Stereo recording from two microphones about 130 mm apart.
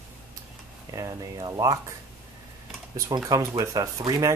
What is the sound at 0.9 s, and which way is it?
Speech, 25° right (ahead or behind).